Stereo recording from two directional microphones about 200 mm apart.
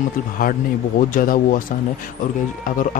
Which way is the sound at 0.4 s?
45° left (ahead or behind).